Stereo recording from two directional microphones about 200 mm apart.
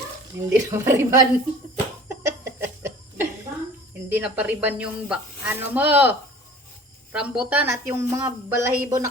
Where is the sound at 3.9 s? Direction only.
10° right (ahead or behind).